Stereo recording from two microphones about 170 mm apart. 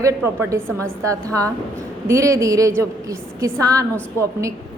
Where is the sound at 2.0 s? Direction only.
20° right (ahead or behind).